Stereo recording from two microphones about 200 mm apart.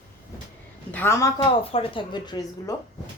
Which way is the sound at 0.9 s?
10° left (ahead or behind).